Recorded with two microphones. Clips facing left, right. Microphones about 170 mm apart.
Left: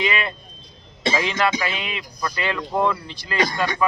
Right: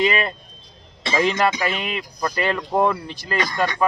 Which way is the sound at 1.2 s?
45° right (ahead or behind).